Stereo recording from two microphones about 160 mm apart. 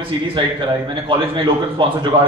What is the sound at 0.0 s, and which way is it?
A man's voice, 35° right (ahead or behind).